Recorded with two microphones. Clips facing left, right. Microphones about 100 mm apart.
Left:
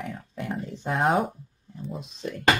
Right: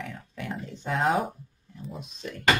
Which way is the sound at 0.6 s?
40° left (ahead or behind).